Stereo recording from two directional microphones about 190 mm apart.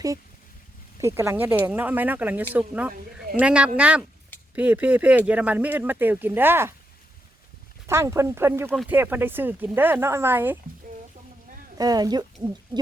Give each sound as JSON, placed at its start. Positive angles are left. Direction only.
{"t": 1.0, "sound": "speech", "side_deg": -15}
{"t": 7.9, "sound": "speech", "side_deg": -15}
{"t": 8.7, "sound": "speech", "side_deg": 0}
{"t": 9.0, "sound": "speech", "side_deg": -10}
{"t": 11.8, "sound": "speech", "side_deg": -20}